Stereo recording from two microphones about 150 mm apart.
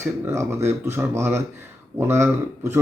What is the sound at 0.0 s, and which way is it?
Speech, 20° right (ahead or behind).